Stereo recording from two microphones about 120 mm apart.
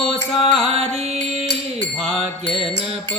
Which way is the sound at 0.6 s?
55° right (ahead or behind).